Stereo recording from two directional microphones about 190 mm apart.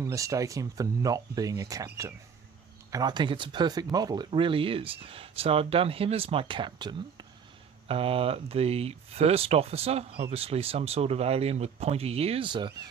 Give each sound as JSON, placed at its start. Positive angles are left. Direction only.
{"t": 0.0, "sound": "speech", "side_deg": -15}
{"t": 2.9, "sound": "speech", "side_deg": -20}